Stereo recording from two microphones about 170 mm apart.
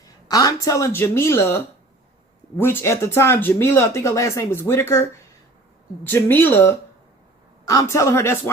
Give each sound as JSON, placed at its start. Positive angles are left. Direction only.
{"t": 0.0, "sound": "speech", "side_deg": 20}